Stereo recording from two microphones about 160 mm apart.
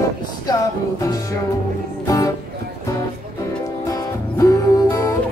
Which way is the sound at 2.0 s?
20° left (ahead or behind).